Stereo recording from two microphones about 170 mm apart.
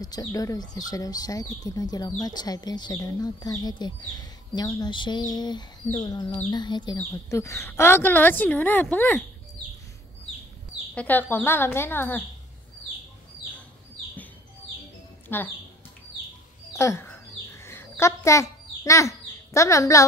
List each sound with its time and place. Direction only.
0.0 s speech: 20° left (ahead or behind)
11.0 s speech: 10° left (ahead or behind)
15.2 s speech: 10° left (ahead or behind)
16.7 s bird: 15° left (ahead or behind)